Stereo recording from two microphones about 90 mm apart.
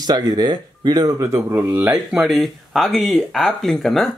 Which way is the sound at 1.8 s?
10° right (ahead or behind).